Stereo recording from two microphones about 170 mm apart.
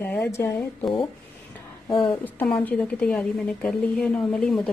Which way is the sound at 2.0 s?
10° left (ahead or behind).